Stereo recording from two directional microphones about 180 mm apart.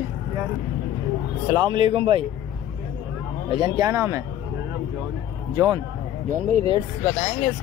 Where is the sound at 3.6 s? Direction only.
20° right (ahead or behind).